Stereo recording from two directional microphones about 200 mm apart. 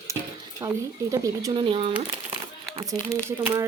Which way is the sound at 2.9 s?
10° left (ahead or behind).